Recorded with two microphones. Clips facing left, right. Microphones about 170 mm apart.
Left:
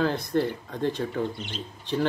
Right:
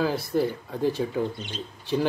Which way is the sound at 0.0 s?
5° right (ahead or behind).